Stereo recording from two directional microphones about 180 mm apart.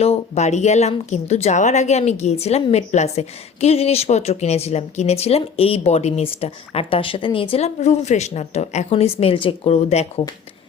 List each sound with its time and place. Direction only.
0.0 s speech: 35° left (ahead or behind)